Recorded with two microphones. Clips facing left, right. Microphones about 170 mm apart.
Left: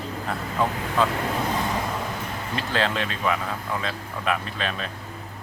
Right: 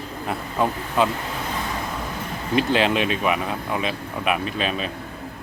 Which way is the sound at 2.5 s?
15° right (ahead or behind).